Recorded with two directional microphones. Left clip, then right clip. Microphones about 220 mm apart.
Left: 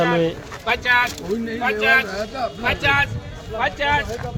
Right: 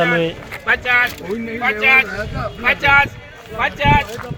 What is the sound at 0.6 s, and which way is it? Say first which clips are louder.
Speech: right 3 dB; 30° left (ahead or behind).